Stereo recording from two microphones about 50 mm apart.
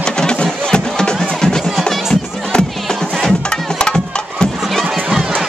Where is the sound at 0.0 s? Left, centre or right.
Centre.